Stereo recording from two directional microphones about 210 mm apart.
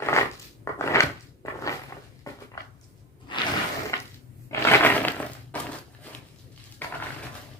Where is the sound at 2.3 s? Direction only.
15° left (ahead or behind).